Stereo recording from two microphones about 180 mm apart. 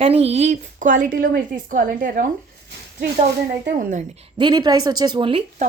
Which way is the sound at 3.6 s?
50° right (ahead or behind).